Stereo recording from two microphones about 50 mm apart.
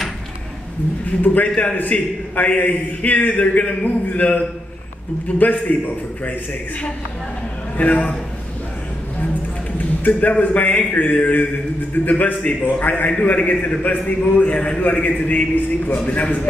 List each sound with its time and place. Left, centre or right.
1.2 s a man's voice: left
7.7 s a man's voice: left
9.2 s run: left
10.3 s a man's voice: left